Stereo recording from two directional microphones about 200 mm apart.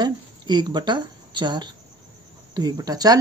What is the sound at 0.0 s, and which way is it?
A woman's voice, 20° right (ahead or behind).